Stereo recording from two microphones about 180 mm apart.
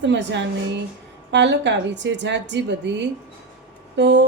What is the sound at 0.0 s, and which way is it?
A woman's voice, 80° right.